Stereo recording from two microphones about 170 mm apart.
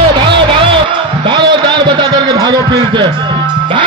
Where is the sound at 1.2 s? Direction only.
30° right (ahead or behind).